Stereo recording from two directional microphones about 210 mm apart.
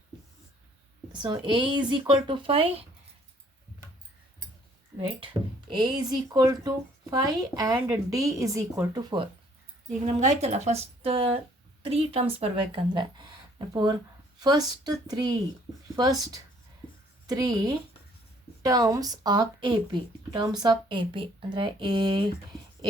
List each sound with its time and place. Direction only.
1.1 s speech: 20° right (ahead or behind)
4.9 s speech: 25° right (ahead or behind)
10.2 s speech: 35° right (ahead or behind)
14.4 s speech: 20° right (ahead or behind)